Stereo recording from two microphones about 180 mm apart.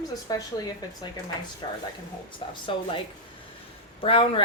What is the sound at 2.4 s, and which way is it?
Speech, 30° left (ahead or behind).